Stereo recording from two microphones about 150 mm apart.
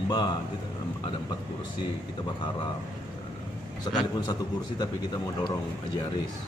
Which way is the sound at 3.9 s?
25° left (ahead or behind).